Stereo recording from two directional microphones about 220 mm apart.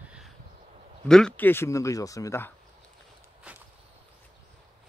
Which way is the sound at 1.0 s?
5° left (ahead or behind).